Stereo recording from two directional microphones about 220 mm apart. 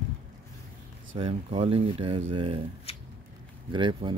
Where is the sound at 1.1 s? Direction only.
25° right (ahead or behind).